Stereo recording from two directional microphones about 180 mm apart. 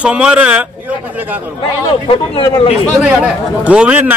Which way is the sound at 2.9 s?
5° right (ahead or behind).